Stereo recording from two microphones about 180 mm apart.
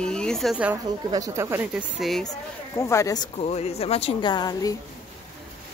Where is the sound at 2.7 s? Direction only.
15° left (ahead or behind).